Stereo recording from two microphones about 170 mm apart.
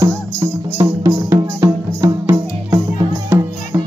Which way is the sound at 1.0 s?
15° right (ahead or behind).